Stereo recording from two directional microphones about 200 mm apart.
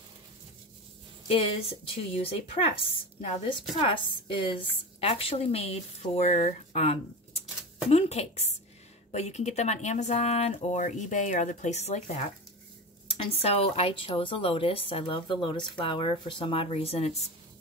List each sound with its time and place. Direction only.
1.2 s a woman's voice: 30° left (ahead or behind)